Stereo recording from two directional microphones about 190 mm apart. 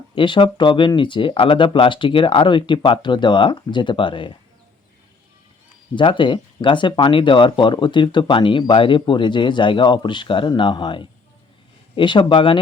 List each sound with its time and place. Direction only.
0.2 s speech: 25° left (ahead or behind)
5.9 s speech: 25° left (ahead or behind)